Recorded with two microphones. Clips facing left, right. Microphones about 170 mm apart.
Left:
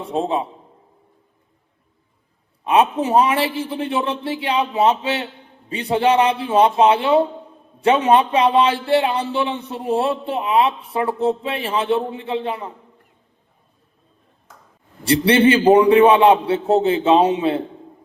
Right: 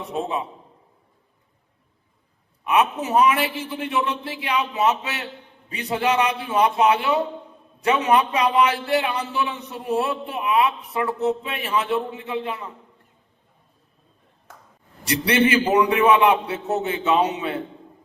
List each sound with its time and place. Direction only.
0.0 s speech: 30° left (ahead or behind)
2.6 s speech: 30° left (ahead or behind)
15.0 s speech: 30° left (ahead or behind)